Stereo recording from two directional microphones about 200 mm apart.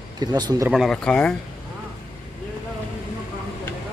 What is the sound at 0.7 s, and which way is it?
Speech, centre (ahead or behind).